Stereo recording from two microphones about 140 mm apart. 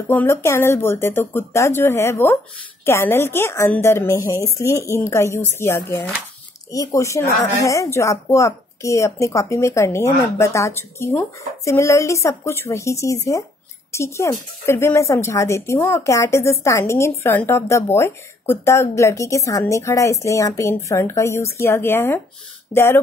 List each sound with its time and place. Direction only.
0.1 s speech: 15° left (ahead or behind)